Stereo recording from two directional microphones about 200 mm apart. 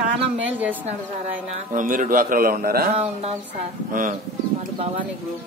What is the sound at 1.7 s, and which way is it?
A man's voice, 40° right (ahead or behind).